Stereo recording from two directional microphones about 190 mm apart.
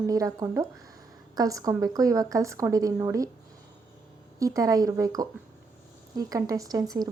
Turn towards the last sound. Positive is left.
turn(degrees=-20)  # may be behind; listen again after turning